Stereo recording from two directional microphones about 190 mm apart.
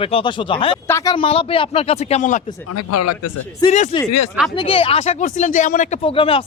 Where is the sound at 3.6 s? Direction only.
40° left (ahead or behind).